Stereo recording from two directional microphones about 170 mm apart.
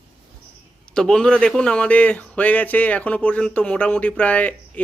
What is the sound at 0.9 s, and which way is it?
Speech, 5° left (ahead or behind).